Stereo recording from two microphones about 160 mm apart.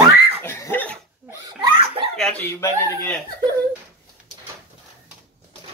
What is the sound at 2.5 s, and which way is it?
Speech, 15° left (ahead or behind).